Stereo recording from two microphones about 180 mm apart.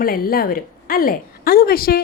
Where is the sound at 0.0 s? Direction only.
55° left (ahead or behind).